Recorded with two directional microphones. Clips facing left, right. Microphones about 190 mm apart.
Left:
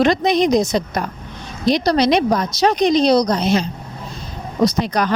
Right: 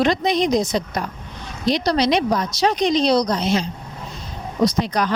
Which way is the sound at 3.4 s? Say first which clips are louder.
Left 3 dB; 60° left (ahead or behind).